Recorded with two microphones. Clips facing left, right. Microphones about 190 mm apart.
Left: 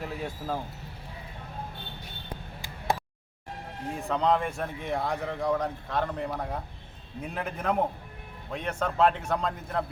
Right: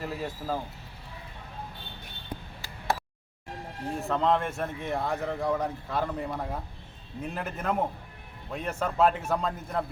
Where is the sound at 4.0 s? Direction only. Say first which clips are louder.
Even; centre (ahead or behind).